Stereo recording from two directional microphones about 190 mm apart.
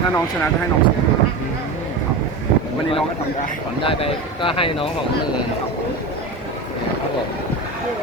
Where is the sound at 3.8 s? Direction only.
30° left (ahead or behind).